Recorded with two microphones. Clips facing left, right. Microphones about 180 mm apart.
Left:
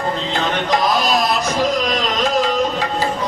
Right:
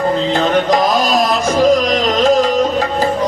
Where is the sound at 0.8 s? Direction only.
50° right (ahead or behind).